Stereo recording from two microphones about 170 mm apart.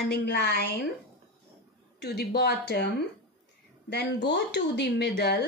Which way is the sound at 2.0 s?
70° left (ahead or behind).